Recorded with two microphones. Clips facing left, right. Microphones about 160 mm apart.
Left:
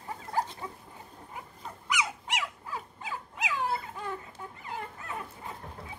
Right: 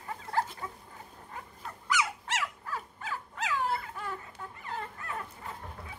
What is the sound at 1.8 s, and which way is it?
Dog, 15° left (ahead or behind).